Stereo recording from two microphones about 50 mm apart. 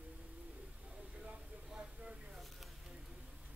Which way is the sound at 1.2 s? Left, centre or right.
Centre.